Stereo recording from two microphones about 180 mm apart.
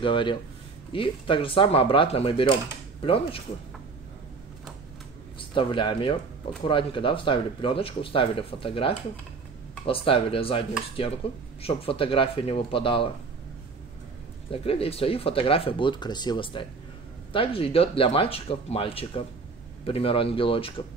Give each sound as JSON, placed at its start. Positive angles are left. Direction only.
{"t": 0.0, "sound": "speech", "side_deg": 25}
{"t": 5.4, "sound": "a man's voice", "side_deg": 30}
{"t": 11.6, "sound": "speech", "side_deg": 30}
{"t": 14.5, "sound": "speech", "side_deg": 30}